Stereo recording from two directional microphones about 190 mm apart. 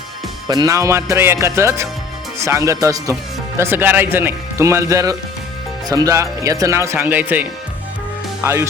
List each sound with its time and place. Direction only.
0.4 s speech: 20° right (ahead or behind)